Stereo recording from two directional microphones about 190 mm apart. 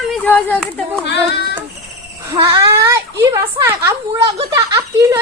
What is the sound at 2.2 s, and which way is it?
A child's voice, 20° right (ahead or behind).